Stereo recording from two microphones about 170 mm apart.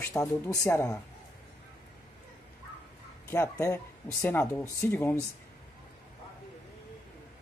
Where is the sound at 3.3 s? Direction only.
15° left (ahead or behind).